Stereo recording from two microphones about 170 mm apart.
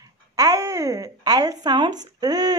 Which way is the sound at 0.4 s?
20° right (ahead or behind).